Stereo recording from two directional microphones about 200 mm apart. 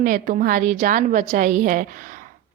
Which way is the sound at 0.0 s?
45° right (ahead or behind).